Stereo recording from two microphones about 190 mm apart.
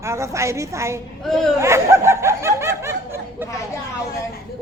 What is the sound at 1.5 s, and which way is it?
Snicker, 15° right (ahead or behind).